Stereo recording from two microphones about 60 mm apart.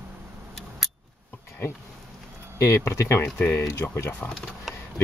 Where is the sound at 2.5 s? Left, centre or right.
Left.